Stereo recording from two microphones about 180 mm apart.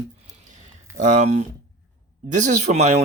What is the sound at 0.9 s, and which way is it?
Speech, 45° right (ahead or behind).